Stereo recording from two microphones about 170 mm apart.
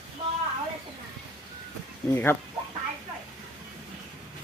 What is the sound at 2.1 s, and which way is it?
Speech, 10° left (ahead or behind).